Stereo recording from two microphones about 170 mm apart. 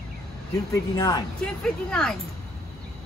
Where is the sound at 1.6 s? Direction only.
5° left (ahead or behind).